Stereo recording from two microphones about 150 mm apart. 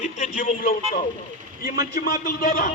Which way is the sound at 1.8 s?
90° left.